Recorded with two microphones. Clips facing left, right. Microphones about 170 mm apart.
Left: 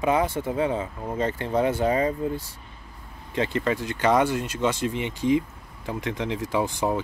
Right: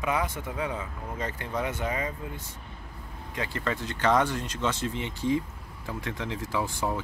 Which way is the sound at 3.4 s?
20° left (ahead or behind).